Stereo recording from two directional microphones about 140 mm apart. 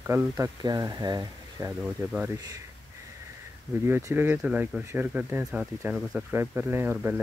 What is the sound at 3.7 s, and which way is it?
Speech, 15° right (ahead or behind).